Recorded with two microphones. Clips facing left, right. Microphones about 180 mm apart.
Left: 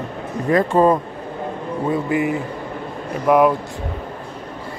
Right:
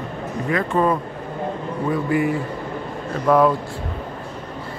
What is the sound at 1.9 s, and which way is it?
A man's voice, 20° left (ahead or behind).